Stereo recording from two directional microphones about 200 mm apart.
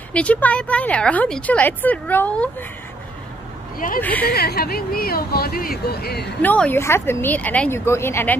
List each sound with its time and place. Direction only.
0.1 s speech: 5° left (ahead or behind)
4.0 s speech: 10° left (ahead or behind)
4.3 s speech: 50° left (ahead or behind)
6.4 s speech: 10° left (ahead or behind)